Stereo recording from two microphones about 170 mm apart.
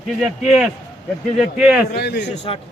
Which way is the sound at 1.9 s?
75° left (ahead or behind).